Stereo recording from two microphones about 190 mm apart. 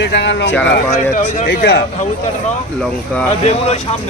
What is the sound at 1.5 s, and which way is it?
Speech, 60° left (ahead or behind).